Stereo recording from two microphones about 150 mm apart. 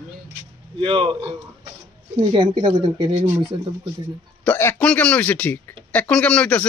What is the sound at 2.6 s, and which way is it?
Speech, 45° right (ahead or behind).